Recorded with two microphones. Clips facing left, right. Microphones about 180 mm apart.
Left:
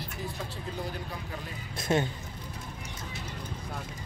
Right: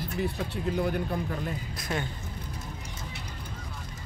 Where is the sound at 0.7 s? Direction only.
60° right (ahead or behind).